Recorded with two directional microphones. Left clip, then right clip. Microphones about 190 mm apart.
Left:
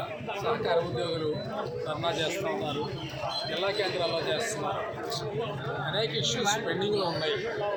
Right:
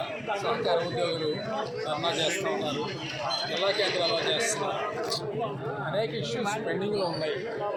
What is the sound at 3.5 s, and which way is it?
Speech, 35° left (ahead or behind).